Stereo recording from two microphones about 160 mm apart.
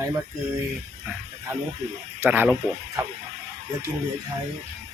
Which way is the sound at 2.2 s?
10° right (ahead or behind).